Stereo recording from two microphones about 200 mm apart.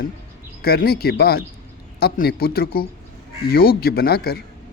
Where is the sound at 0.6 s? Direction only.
50° left (ahead or behind).